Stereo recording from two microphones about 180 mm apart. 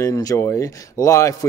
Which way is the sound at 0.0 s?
20° left (ahead or behind).